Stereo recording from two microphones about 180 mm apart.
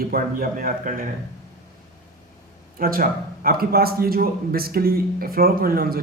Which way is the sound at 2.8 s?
55° right (ahead or behind).